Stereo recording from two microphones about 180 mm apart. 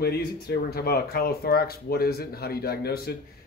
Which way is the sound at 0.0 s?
60° left (ahead or behind).